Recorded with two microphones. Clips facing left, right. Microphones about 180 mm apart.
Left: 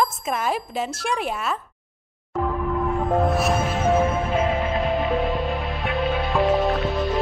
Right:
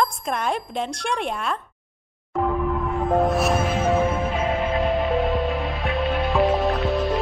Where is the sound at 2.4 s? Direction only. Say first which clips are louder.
Right 1 dB; centre (ahead or behind).